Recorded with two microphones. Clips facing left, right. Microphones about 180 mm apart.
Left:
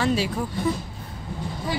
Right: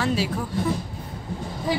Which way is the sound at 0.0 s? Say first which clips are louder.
Left 1 dB; centre (ahead or behind).